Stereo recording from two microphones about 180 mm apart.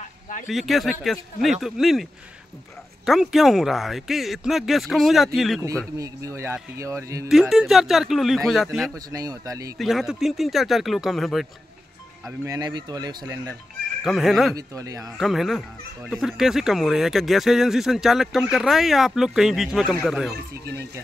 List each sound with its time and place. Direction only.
0.0 s a sound: 45° left (ahead or behind)
0.5 s speech: centre (ahead or behind)
3.1 s speech: centre (ahead or behind)
5.9 s speech: 20° right (ahead or behind)
7.2 s speech: centre (ahead or behind)
8.9 s speech: 20° right (ahead or behind)
9.8 s speech: centre (ahead or behind)
12.3 s speech: 20° right (ahead or behind)
14.0 s speech: centre (ahead or behind)
14.5 s speech: 20° right (ahead or behind)
15.1 s speech: centre (ahead or behind)